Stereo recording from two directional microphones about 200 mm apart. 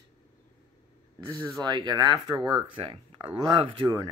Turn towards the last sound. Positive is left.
turn(degrees=-20)  # may be behind; listen again after turning